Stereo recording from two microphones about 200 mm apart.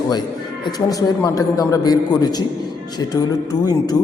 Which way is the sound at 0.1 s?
20° left (ahead or behind).